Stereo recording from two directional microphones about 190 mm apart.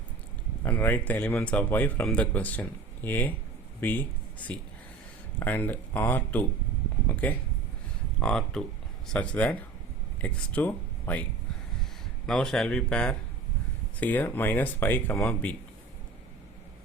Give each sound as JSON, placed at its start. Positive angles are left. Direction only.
{"t": 0.6, "sound": "speech", "side_deg": 10}
{"t": 7.1, "sound": "a sound", "side_deg": 10}
{"t": 8.2, "sound": "speech", "side_deg": 5}